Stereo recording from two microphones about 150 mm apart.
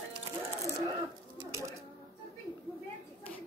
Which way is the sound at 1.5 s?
20° right (ahead or behind).